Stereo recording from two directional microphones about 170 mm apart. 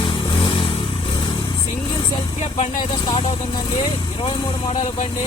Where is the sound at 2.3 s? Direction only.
45° left (ahead or behind).